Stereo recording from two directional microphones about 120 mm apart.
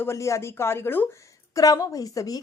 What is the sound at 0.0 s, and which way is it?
A woman's voice, 25° left (ahead or behind).